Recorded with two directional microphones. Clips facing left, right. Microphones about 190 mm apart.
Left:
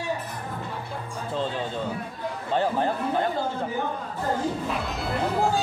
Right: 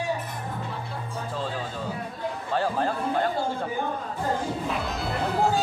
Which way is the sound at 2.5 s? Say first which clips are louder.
Left 2 dB; 20° left (ahead or behind).